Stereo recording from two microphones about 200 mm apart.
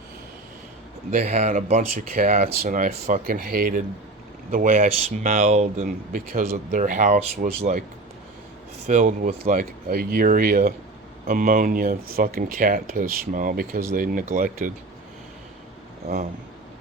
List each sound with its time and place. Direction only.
1.1 s speech: 35° right (ahead or behind)
8.9 s speech: 40° right (ahead or behind)